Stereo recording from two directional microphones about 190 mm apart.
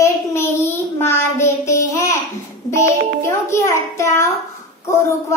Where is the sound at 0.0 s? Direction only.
15° left (ahead or behind).